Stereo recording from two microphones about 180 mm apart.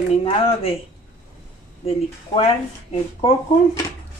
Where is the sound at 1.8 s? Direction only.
35° left (ahead or behind).